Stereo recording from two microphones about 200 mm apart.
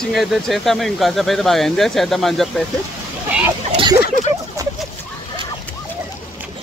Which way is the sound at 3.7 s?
25° right (ahead or behind).